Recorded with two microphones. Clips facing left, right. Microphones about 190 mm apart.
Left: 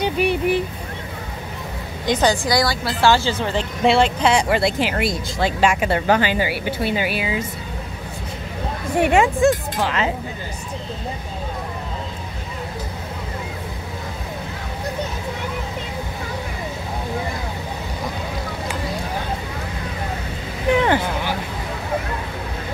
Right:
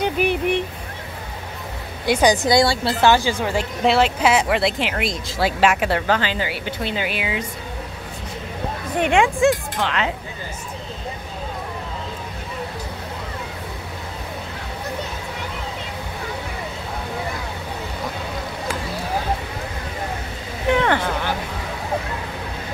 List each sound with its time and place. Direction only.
0.0 s a sound: centre (ahead or behind)
2.0 s a woman's voice: 10° right (ahead or behind)
2.3 s a woman's voice: 25° right (ahead or behind); by 6.0 s centre (ahead or behind)
6.0 s speech: 15° left (ahead or behind)
8.9 s speech: 5° left (ahead or behind)
20.8 s a sound: 15° left (ahead or behind)